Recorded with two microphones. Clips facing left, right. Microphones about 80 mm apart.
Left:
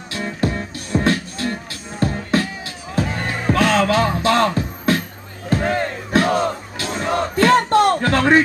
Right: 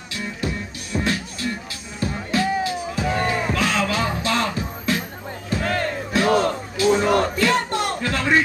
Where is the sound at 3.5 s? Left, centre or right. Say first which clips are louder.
Left 6 dB; left.